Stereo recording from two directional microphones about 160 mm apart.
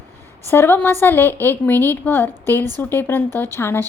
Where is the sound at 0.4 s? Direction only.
15° left (ahead or behind).